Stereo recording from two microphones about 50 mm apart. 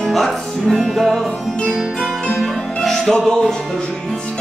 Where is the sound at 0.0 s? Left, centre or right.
Centre.